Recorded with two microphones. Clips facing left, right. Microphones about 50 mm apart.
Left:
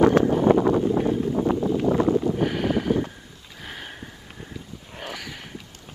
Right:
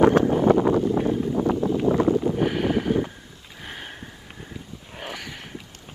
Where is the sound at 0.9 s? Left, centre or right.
Centre.